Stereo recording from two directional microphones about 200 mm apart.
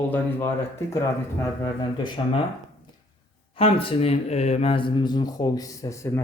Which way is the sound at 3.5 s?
30° left (ahead or behind).